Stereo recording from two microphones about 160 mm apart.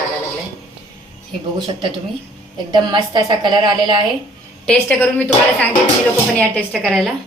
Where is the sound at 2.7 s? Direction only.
30° right (ahead or behind).